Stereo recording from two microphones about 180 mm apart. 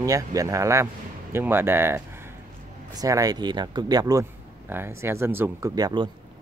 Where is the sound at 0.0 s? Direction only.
20° right (ahead or behind).